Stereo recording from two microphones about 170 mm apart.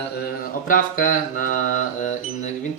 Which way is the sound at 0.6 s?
55° left (ahead or behind).